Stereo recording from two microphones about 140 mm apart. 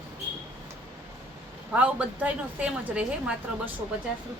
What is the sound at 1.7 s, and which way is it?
A woman's voice, 10° right (ahead or behind).